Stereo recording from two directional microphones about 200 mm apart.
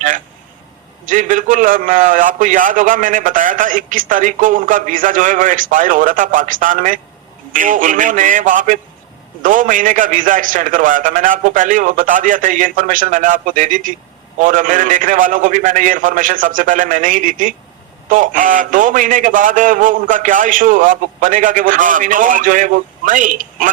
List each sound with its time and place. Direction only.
1.0 s a man's voice: 40° right (ahead or behind)